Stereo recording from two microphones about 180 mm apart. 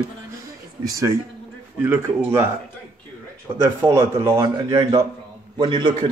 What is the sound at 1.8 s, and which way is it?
Speech, 10° right (ahead or behind).